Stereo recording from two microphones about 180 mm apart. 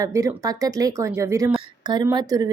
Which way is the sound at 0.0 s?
15° right (ahead or behind).